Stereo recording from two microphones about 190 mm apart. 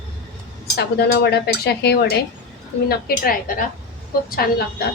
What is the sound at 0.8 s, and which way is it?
A woman's voice, 55° left (ahead or behind).